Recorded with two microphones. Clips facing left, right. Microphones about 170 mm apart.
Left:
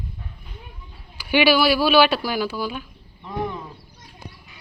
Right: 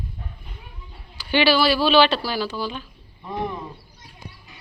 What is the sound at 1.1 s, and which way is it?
Speech, 10° left (ahead or behind).